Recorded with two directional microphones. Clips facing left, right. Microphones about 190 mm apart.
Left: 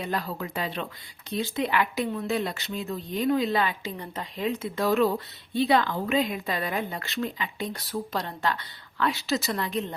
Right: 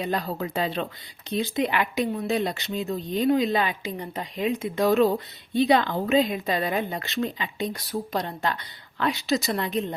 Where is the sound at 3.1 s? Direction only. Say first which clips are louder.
Right 3 dB; 30° right (ahead or behind).